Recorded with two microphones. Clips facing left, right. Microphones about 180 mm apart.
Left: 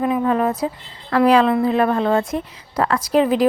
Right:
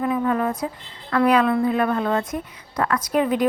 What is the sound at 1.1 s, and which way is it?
A woman's voice, 30° left (ahead or behind).